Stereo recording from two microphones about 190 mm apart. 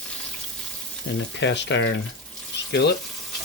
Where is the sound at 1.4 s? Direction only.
70° left (ahead or behind).